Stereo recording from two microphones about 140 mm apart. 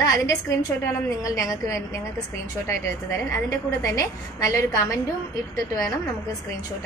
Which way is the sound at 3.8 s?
25° left (ahead or behind).